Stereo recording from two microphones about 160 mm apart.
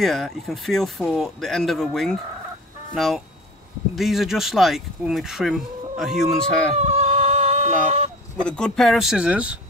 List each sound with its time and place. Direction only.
0.0 s speech: centre (ahead or behind)
6.8 s a sound: 40° right (ahead or behind)
8.5 s speech: 5° left (ahead or behind)